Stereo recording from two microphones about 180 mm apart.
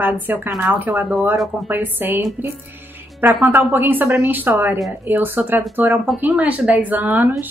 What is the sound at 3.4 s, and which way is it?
Speech, 10° right (ahead or behind).